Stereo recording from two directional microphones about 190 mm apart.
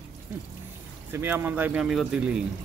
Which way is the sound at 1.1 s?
10° right (ahead or behind).